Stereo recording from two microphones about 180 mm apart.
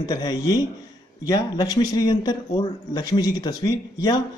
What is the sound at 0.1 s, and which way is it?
A man's voice, 20° left (ahead or behind).